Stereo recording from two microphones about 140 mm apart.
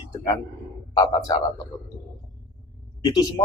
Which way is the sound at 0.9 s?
25° left (ahead or behind).